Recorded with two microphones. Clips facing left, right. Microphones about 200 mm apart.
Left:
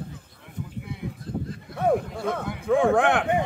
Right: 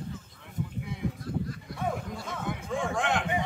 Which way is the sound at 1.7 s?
60° left (ahead or behind).